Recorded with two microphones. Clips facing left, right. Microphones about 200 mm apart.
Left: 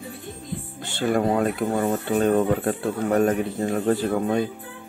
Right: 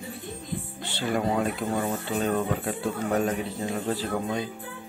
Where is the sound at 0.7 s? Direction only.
45° left (ahead or behind).